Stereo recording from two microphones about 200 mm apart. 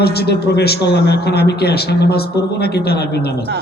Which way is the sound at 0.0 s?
55° left (ahead or behind).